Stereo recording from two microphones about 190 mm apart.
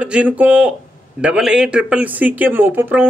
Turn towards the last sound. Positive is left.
turn(degrees=-10)  # may be behind; listen again after turning